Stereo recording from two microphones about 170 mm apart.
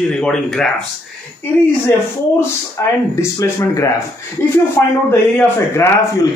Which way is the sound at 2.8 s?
15° left (ahead or behind).